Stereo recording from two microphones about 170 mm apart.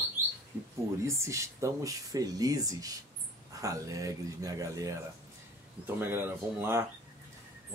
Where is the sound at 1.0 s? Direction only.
15° right (ahead or behind).